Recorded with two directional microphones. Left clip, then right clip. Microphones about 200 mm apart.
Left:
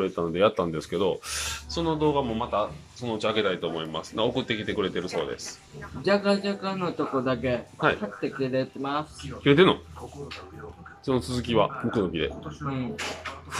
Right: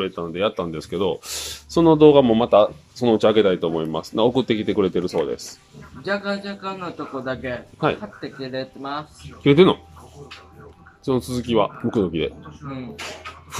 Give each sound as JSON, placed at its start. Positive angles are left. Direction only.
{"t": 0.0, "sound": "speech", "side_deg": 0}
{"t": 1.7, "sound": "speech", "side_deg": -40}
{"t": 3.3, "sound": "speech", "side_deg": -30}
{"t": 6.0, "sound": "a man's voice", "side_deg": 10}
{"t": 9.4, "sound": "speech", "side_deg": -15}
{"t": 11.1, "sound": "speech", "side_deg": -15}